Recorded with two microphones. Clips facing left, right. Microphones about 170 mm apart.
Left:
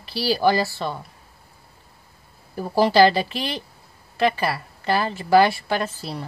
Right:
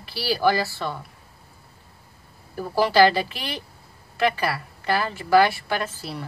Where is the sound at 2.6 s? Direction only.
30° left (ahead or behind).